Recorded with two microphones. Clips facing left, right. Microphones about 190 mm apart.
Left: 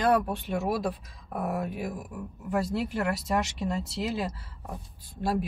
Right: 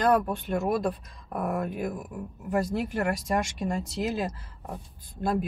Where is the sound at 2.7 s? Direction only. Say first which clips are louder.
Right 1 dB; 50° right (ahead or behind).